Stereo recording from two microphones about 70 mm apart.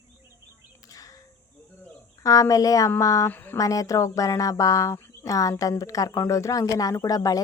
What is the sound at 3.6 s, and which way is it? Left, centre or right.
Speech, left.